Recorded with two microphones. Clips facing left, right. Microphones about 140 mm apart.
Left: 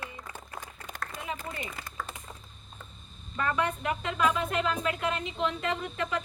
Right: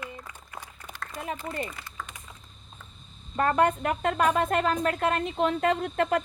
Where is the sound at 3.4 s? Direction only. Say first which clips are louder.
Right 6 dB; 50° right (ahead or behind).